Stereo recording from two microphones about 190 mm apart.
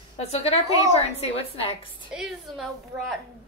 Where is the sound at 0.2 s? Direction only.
30° left (ahead or behind).